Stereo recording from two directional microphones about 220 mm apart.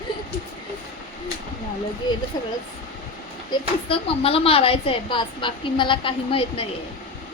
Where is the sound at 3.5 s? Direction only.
25° left (ahead or behind).